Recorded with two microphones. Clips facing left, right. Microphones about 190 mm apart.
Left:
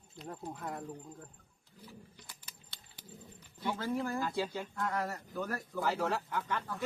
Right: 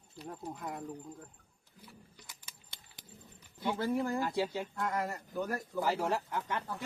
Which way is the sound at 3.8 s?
10° right (ahead or behind).